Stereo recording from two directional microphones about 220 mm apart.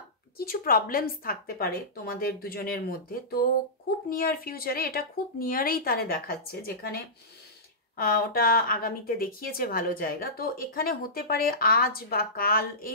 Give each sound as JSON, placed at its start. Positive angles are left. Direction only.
{"t": 0.4, "sound": "a woman's voice", "side_deg": 40}
{"t": 8.0, "sound": "speech", "side_deg": 40}